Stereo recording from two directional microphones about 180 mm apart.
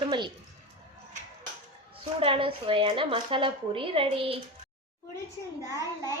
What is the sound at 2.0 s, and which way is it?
Speech, 30° right (ahead or behind).